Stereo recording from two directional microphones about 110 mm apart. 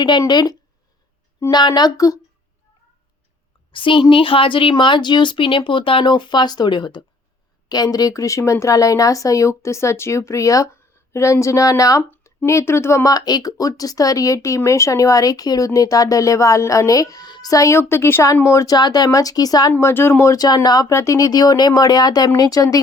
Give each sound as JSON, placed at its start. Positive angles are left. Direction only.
{"t": 0.0, "sound": "speech", "side_deg": 40}
{"t": 3.7, "sound": "a woman's voice", "side_deg": 50}
{"t": 12.1, "sound": "a sound", "side_deg": 15}
{"t": 12.5, "sound": "speech", "side_deg": 25}
{"t": 19.7, "sound": "speech", "side_deg": 20}